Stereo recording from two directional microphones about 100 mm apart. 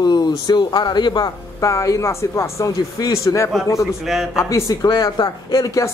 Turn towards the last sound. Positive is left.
turn(degrees=35)  # may be behind; listen again after turning